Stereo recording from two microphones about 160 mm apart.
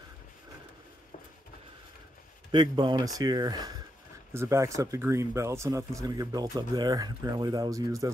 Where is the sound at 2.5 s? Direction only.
30° right (ahead or behind).